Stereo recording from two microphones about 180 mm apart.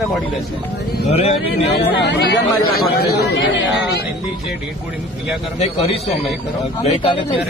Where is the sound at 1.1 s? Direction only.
35° left (ahead or behind).